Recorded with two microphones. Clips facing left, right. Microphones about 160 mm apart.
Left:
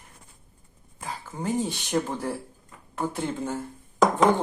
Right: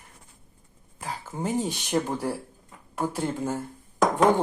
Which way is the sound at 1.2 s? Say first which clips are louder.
Even; 15° right (ahead or behind).